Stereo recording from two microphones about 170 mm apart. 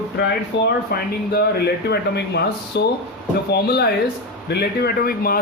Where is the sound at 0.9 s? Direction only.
70° left (ahead or behind).